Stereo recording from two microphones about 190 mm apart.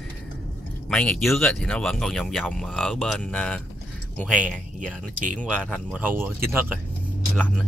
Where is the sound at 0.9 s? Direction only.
Centre (ahead or behind).